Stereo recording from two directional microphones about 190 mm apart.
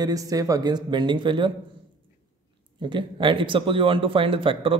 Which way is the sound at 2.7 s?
25° right (ahead or behind).